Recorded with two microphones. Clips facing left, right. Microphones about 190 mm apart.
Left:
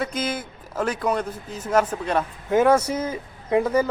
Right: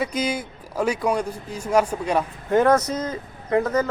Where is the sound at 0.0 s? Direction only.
10° right (ahead or behind).